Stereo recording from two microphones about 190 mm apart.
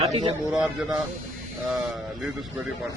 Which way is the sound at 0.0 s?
35° right (ahead or behind).